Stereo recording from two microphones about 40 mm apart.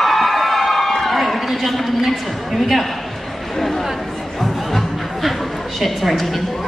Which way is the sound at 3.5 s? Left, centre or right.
Centre.